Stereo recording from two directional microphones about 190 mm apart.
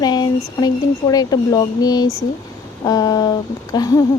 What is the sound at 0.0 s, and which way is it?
Speech, 20° left (ahead or behind).